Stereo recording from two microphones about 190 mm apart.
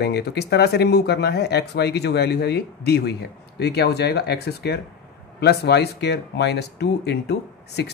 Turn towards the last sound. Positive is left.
turn(degrees=60)  # may be behind; listen again after turning